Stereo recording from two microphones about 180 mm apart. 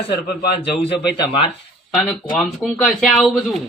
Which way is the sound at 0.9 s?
65° left (ahead or behind).